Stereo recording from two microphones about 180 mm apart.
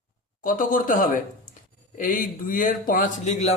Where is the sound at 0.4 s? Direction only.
50° left (ahead or behind).